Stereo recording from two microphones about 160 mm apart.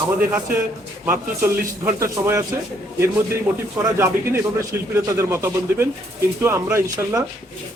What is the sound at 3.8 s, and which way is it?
Speech, 15° right (ahead or behind).